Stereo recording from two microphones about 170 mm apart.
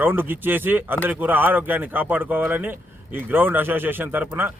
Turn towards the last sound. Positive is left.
turn(degrees=-10)  # may be behind; listen again after turning